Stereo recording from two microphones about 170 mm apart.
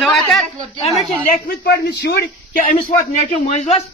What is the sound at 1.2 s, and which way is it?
A man's voice, 65° left (ahead or behind).